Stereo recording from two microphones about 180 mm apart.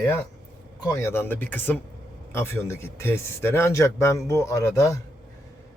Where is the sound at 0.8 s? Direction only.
15° left (ahead or behind).